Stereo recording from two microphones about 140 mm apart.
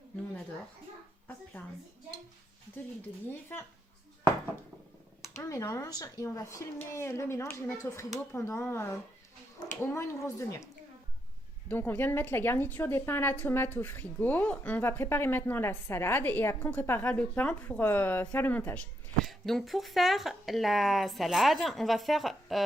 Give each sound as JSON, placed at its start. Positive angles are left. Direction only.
{"t": 1.6, "sound": "a woman's voice", "side_deg": 15}
{"t": 5.4, "sound": "a woman's voice", "side_deg": 25}
{"t": 11.7, "sound": "a woman's voice", "side_deg": 15}